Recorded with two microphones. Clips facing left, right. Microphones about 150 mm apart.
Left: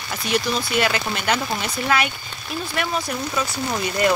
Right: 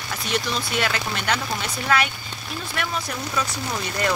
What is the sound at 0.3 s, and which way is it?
Speech, 5° left (ahead or behind).